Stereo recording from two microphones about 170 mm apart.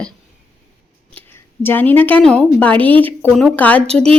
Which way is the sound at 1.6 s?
10° left (ahead or behind).